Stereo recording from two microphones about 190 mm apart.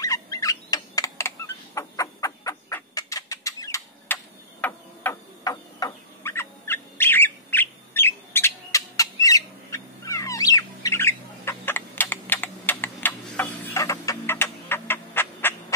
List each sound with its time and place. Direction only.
0.0 s fowl: 20° left (ahead or behind)
5.4 s bird: 20° left (ahead or behind)